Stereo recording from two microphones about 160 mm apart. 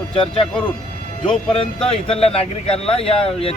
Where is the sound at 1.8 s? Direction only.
35° left (ahead or behind).